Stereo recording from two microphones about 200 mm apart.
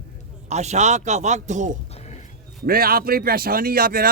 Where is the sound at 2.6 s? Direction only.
50° right (ahead or behind).